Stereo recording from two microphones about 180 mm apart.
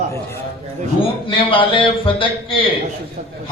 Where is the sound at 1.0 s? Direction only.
30° left (ahead or behind).